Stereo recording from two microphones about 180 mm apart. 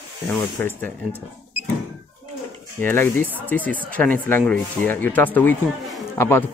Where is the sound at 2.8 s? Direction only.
10° left (ahead or behind).